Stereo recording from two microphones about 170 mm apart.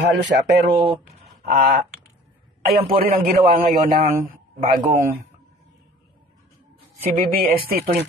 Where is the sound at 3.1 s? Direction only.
55° right (ahead or behind).